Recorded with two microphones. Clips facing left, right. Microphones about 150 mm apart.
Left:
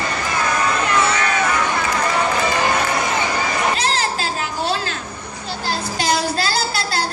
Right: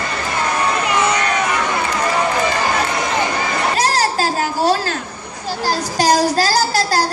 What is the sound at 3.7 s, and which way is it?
Children playing, 40° right (ahead or behind).